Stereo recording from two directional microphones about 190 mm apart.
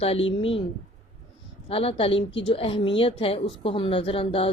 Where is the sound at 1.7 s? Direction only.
30° left (ahead or behind).